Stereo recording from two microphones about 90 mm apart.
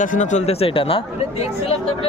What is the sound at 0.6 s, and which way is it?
Speech, 90° left.